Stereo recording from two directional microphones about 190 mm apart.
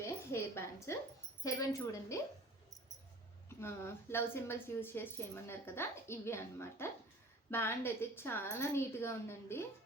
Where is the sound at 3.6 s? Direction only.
15° left (ahead or behind).